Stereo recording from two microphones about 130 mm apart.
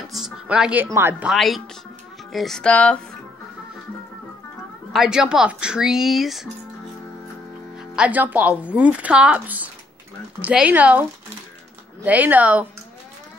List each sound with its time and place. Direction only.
0.1 s music: 5° right (ahead or behind)
0.9 s speech: 20° right (ahead or behind)
1.3 s speech: centre (ahead or behind)
4.9 s speech: 5° right (ahead or behind)
7.9 s speech: 10° right (ahead or behind)